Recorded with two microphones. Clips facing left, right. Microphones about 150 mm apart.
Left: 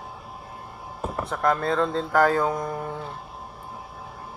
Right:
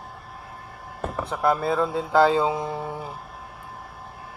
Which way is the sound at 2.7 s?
10° right (ahead or behind).